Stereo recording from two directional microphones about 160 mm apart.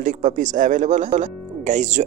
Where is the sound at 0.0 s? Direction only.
50° right (ahead or behind).